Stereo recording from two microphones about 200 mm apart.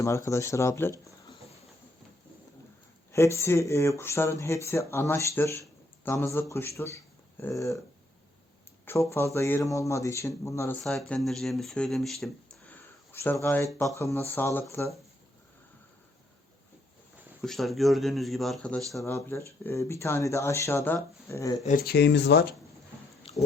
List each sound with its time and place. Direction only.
0.0 s speech: 15° left (ahead or behind)
3.1 s a man's voice: 15° left (ahead or behind)
8.8 s speech: 10° left (ahead or behind)
10.8 s speech: 5° left (ahead or behind)
17.4 s speech: centre (ahead or behind)
21.8 s speech: 60° left (ahead or behind)